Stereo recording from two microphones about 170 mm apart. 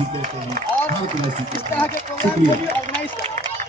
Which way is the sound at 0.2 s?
50° right (ahead or behind).